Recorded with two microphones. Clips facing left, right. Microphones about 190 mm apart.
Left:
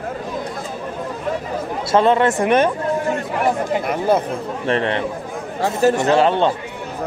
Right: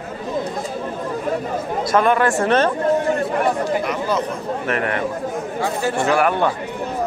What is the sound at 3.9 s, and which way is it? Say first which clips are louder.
Speech: left 4 dB; 55° left (ahead or behind).